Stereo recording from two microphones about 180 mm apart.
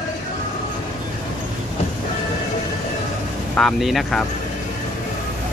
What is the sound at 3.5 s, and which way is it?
Speech, centre (ahead or behind).